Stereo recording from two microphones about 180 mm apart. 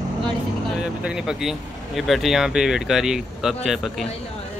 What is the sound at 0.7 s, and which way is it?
Speech, 5° right (ahead or behind).